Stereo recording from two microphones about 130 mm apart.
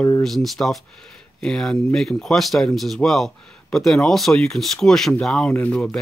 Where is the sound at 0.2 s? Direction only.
Centre (ahead or behind).